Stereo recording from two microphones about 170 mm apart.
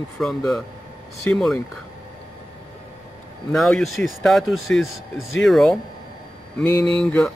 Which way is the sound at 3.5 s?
Centre (ahead or behind).